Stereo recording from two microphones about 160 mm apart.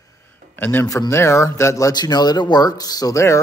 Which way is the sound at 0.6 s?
15° left (ahead or behind).